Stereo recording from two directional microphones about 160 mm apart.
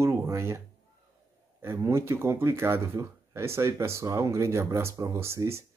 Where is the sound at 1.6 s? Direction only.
15° right (ahead or behind).